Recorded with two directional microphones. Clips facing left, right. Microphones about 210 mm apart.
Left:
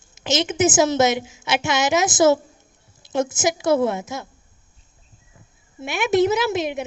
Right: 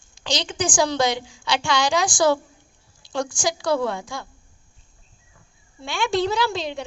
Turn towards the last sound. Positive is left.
turn(degrees=20)  # may be behind; listen again after turning